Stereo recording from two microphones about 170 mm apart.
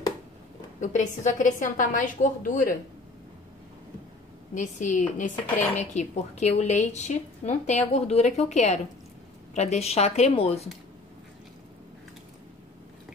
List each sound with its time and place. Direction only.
0.7 s a woman's voice: 45° left (ahead or behind)
4.6 s a woman's voice: 45° left (ahead or behind)